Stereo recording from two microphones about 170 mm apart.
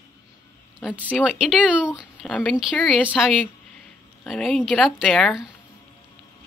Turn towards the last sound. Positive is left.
turn(degrees=0)  # may be behind; listen again after turning